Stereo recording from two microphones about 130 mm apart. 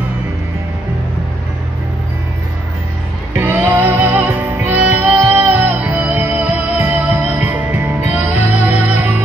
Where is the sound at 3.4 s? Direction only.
15° right (ahead or behind).